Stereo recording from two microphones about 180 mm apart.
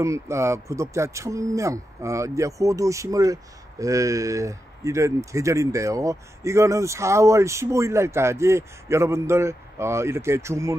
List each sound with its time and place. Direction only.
0.0 s speech: 15° right (ahead or behind)